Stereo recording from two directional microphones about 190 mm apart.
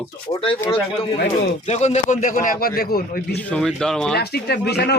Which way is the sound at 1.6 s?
35° left (ahead or behind).